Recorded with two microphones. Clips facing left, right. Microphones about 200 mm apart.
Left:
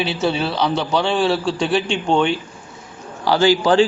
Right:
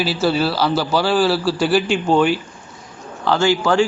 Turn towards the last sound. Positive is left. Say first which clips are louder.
# left 2 dB
turn(degrees=20)  # may be behind; listen again after turning